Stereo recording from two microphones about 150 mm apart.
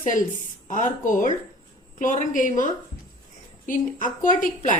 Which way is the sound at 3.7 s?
65° left (ahead or behind).